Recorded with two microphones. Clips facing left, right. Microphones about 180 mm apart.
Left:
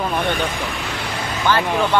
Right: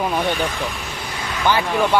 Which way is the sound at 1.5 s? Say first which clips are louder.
Even; 15° right (ahead or behind).